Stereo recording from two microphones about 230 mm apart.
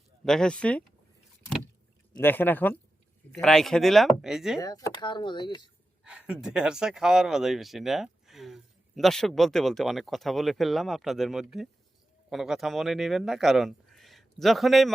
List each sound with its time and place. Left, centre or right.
0.3 s speech: centre
2.1 s speech: centre
4.6 s speech: centre
6.1 s speech: centre